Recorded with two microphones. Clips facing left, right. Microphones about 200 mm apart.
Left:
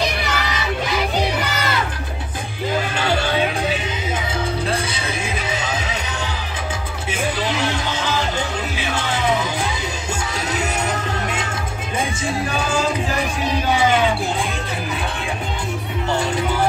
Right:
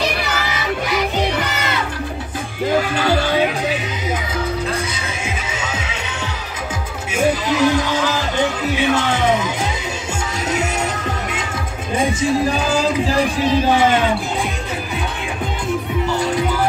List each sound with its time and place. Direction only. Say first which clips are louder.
5.2 s music: even; 35° left (ahead or behind)
7.4 s music: right 6 dB; 30° left (ahead or behind)